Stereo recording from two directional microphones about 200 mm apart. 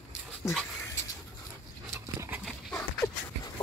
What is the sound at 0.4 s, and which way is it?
Speech, 15° left (ahead or behind).